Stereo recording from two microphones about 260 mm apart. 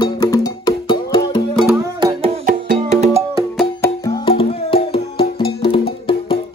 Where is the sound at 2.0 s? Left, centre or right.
Centre.